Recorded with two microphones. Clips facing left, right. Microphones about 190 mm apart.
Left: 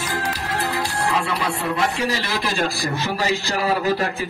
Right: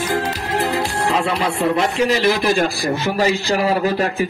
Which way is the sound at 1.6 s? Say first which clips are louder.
Right 8 dB; 20° right (ahead or behind).